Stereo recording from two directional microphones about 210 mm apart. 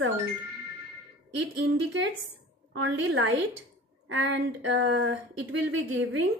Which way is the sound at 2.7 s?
65° right (ahead or behind).